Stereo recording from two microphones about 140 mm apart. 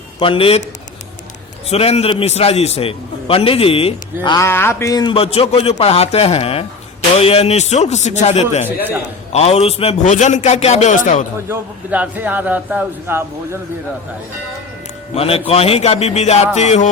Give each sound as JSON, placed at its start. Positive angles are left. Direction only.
{"t": 0.2, "sound": "a man's voice", "side_deg": 40}
{"t": 1.7, "sound": "a man's voice", "side_deg": 45}
{"t": 4.4, "sound": "speech", "side_deg": 15}
{"t": 5.1, "sound": "a man's voice", "side_deg": 45}
{"t": 8.6, "sound": "a man's voice", "side_deg": -15}
{"t": 9.3, "sound": "a man's voice", "side_deg": 50}
{"t": 11.4, "sound": "a man's voice", "side_deg": -15}
{"t": 15.1, "sound": "a man's voice", "side_deg": 45}